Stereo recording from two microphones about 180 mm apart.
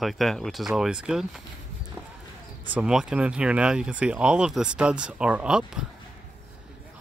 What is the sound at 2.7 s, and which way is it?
Speech, 5° right (ahead or behind).